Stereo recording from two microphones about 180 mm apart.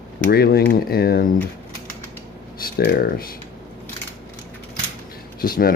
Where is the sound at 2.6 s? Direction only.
55° left (ahead or behind).